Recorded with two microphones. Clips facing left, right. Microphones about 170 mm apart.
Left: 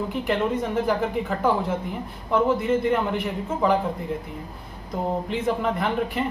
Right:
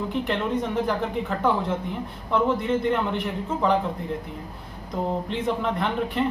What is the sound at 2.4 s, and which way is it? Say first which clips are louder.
Speech: left 1 dB; 5° left (ahead or behind).